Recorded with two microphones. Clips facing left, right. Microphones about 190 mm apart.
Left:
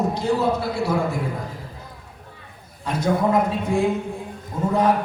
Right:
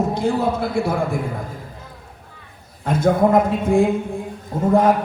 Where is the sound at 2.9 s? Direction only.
50° right (ahead or behind).